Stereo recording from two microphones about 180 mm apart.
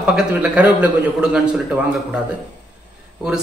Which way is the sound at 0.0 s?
5° right (ahead or behind).